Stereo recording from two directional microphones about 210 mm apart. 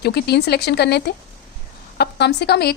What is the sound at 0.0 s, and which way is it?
A woman's voice, 50° left (ahead or behind).